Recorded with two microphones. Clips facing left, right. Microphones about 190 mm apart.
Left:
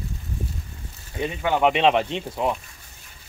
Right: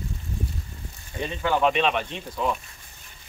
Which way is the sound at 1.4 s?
20° left (ahead or behind).